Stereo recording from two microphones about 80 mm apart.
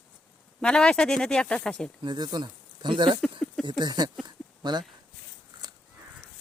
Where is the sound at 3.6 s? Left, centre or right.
Right.